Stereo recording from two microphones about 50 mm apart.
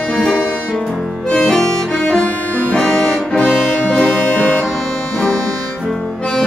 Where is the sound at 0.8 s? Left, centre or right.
Centre.